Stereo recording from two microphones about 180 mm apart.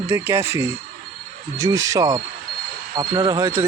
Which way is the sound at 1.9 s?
20° right (ahead or behind).